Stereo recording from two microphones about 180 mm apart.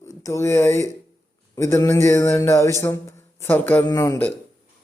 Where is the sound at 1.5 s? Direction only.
15° left (ahead or behind).